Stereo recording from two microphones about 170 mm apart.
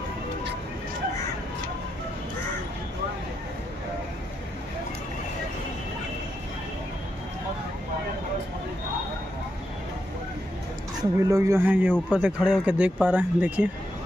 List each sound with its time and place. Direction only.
11.0 s speech: 20° right (ahead or behind)